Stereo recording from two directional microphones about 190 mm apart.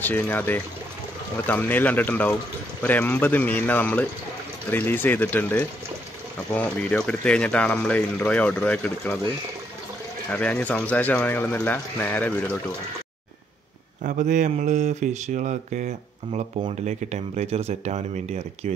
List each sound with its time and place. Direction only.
0.0 s speech: 10° left (ahead or behind)
10.3 s speech: 5° left (ahead or behind)
14.0 s speech: 40° right (ahead or behind)